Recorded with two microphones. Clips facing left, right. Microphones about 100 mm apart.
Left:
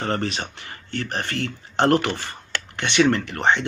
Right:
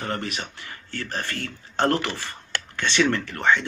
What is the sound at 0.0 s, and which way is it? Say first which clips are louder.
Speech: left 4 dB; 35° left (ahead or behind).